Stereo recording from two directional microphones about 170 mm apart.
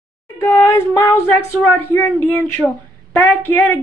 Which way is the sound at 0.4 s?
20° left (ahead or behind).